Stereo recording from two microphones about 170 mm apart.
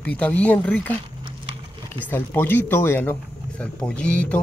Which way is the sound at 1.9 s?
10° left (ahead or behind).